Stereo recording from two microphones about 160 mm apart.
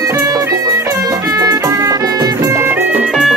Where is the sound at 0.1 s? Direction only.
20° right (ahead or behind).